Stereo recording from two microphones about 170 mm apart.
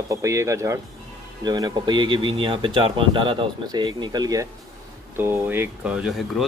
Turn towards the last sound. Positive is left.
turn(degrees=0)  # may be behind; listen again after turning